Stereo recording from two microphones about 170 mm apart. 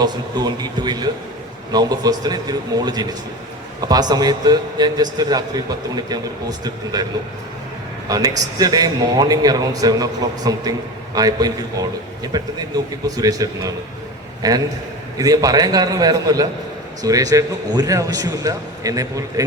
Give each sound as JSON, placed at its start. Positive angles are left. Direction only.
{"t": 0.0, "sound": "a man's voice", "side_deg": -25}
{"t": 8.0, "sound": "a man's voice", "side_deg": -20}